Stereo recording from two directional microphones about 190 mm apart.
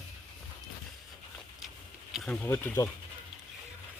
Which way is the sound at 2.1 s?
5° left (ahead or behind).